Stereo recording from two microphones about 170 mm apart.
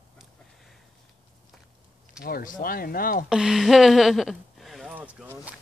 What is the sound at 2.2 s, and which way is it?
Speech, 55° left (ahead or behind).